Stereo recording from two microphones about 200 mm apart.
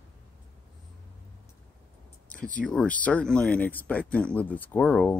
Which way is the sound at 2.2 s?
40° left (ahead or behind).